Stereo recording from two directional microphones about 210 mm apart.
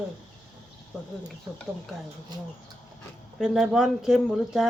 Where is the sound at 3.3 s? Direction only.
Centre (ahead or behind).